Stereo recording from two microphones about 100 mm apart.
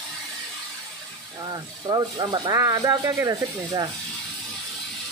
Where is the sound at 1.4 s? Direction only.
45° right (ahead or behind).